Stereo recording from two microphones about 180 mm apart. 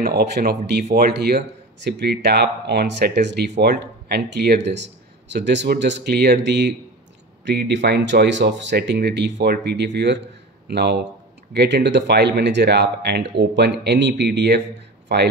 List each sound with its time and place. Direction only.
0.0 s speech: 65° right (ahead or behind)